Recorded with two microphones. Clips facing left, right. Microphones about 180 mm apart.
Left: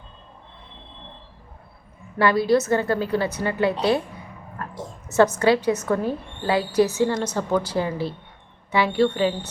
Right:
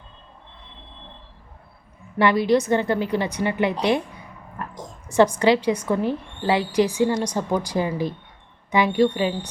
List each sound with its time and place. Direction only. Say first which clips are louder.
2.1 s a woman's voice: even; 20° right (ahead or behind)
5.0 s a woman's voice: right 1 dB; 10° right (ahead or behind)